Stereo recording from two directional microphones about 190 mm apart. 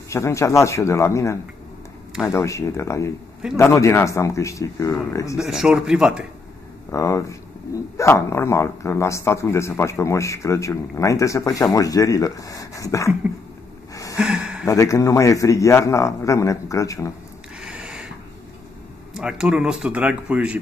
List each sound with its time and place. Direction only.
0.1 s speech: 15° left (ahead or behind)
5.4 s speech: 5° right (ahead or behind)
6.9 s speech: 15° left (ahead or behind)
14.1 s a sound: 5° right (ahead or behind)
14.7 s speech: 15° left (ahead or behind)
17.6 s a sound: 5° right (ahead or behind)
19.1 s speech: 5° right (ahead or behind)